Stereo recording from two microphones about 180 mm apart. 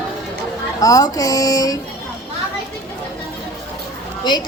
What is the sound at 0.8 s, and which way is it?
Speech, 20° left (ahead or behind).